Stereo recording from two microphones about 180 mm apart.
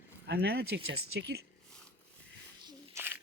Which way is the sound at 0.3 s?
65° right (ahead or behind).